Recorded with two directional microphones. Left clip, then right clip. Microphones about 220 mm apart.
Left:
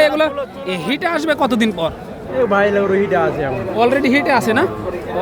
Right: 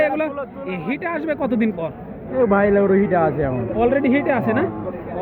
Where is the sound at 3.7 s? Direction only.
15° left (ahead or behind).